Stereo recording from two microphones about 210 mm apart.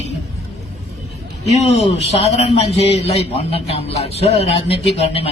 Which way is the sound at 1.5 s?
30° left (ahead or behind).